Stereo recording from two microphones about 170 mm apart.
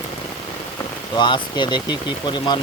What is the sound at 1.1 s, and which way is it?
Speech, 25° left (ahead or behind).